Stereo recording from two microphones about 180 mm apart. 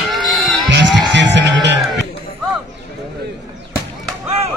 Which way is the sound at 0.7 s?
75° right (ahead or behind).